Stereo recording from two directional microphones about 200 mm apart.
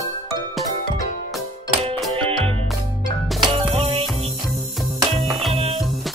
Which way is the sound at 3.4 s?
25° right (ahead or behind).